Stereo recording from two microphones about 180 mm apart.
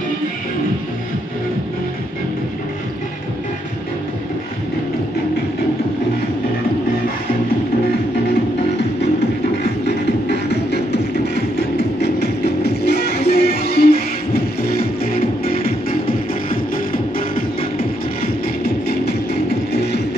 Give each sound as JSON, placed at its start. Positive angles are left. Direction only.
{"t": 9.8, "sound": "music", "side_deg": 65}
{"t": 12.0, "sound": "music", "side_deg": 65}